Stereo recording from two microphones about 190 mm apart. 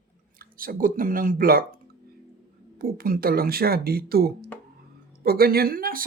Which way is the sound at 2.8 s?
50° right (ahead or behind).